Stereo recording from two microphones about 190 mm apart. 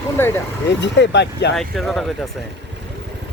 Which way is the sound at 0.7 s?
70° left (ahead or behind).